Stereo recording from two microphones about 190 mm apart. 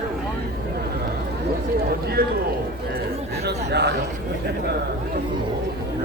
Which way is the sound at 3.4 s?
60° right (ahead or behind).